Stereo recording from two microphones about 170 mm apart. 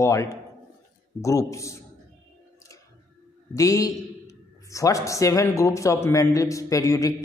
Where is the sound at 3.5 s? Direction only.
20° left (ahead or behind).